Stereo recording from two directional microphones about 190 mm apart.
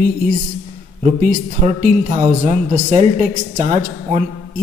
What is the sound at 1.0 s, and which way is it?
A woman's voice, 35° right (ahead or behind).